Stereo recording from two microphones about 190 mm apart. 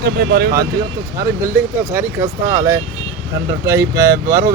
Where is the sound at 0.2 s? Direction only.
60° right (ahead or behind).